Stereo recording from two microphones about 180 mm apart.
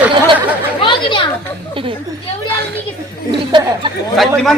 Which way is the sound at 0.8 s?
25° left (ahead or behind).